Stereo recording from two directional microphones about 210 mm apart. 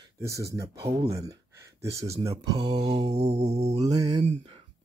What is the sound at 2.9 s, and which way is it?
Mantra, 30° right (ahead or behind).